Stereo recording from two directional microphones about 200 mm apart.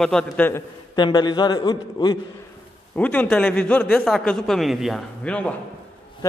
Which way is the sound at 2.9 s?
5° left (ahead or behind).